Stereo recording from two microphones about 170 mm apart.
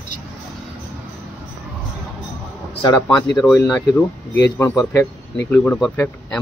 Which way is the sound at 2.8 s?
20° left (ahead or behind).